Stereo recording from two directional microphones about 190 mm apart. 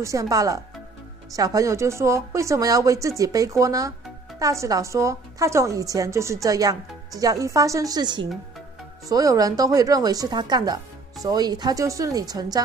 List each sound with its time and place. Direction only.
0.0 s a woman's voice: 15° right (ahead or behind)